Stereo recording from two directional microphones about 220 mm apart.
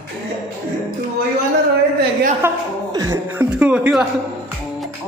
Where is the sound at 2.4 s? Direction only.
15° right (ahead or behind).